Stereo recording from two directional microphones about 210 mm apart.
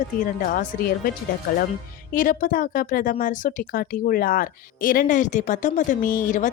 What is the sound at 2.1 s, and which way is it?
Speech, 40° left (ahead or behind).